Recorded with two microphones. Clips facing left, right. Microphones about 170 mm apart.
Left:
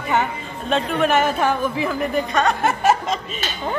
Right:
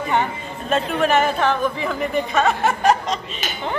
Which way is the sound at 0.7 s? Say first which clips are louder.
Even; centre (ahead or behind).